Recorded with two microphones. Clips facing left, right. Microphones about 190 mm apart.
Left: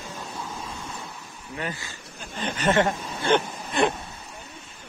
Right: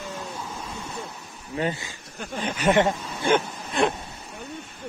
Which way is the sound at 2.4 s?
10° right (ahead or behind).